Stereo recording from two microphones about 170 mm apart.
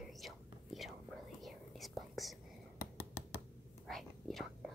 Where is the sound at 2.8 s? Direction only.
15° left (ahead or behind).